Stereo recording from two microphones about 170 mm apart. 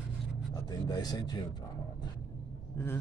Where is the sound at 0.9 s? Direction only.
25° left (ahead or behind).